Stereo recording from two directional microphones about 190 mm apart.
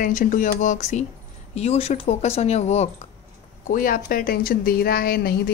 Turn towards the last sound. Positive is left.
turn(degrees=55)  # may be behind; listen again after turning